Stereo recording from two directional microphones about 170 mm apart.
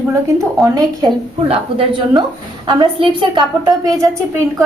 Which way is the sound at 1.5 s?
30° right (ahead or behind).